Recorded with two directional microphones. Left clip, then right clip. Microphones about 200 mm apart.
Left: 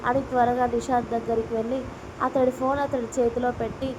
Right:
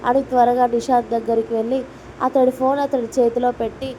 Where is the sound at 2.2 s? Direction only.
25° right (ahead or behind).